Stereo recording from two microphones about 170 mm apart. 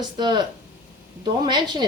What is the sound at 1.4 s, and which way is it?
Speech, 25° right (ahead or behind).